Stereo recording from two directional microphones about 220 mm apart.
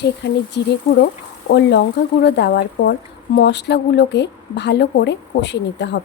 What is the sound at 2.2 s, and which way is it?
A woman's voice, 50° left (ahead or behind).